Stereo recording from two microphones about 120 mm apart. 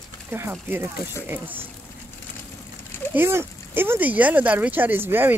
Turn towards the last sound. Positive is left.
turn(degrees=-20)  # may be behind; listen again after turning